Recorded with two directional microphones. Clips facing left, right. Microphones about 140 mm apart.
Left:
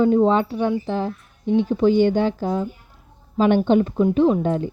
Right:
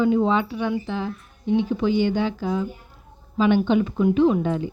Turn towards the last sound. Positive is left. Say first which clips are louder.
# left 1 dB
turn(degrees=45)  # may be behind; listen again after turning